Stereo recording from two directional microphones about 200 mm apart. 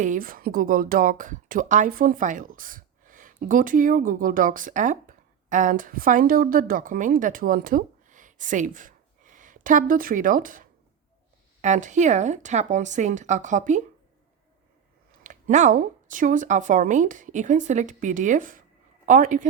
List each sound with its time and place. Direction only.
0.0 s speech: 45° right (ahead or behind)
15.2 s speech: 40° right (ahead or behind)